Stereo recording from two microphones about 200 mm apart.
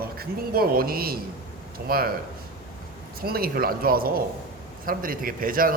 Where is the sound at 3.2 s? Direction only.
50° right (ahead or behind).